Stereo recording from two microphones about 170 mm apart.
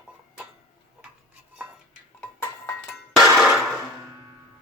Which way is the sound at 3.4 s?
5° right (ahead or behind).